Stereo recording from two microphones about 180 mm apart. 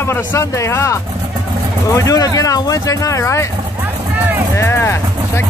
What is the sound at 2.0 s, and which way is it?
Speech, 20° left (ahead or behind).